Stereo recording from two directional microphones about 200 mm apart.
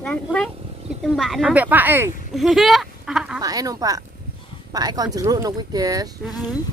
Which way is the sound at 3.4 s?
20° right (ahead or behind).